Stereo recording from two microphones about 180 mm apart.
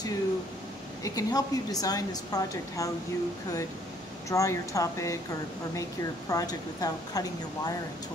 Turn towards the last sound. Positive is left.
turn(degrees=20)  # may be behind; listen again after turning